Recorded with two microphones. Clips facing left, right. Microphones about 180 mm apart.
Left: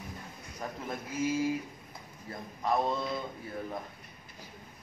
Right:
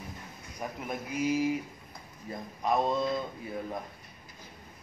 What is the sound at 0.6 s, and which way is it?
Speech, 15° right (ahead or behind).